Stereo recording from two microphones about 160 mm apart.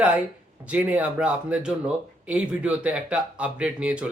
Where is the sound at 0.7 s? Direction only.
10° right (ahead or behind).